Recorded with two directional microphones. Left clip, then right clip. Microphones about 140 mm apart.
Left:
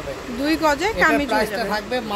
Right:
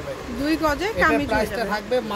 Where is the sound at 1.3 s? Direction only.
20° right (ahead or behind).